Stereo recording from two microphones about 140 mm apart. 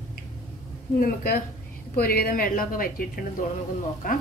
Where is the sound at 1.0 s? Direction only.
85° left.